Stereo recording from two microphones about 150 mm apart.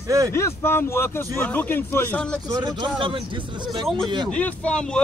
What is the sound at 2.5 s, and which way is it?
Speech, 25° right (ahead or behind).